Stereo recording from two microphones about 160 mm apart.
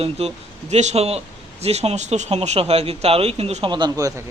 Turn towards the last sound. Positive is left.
turn(degrees=-20)  # may be behind; listen again after turning